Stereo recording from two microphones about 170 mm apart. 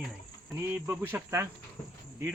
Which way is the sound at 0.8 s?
10° right (ahead or behind).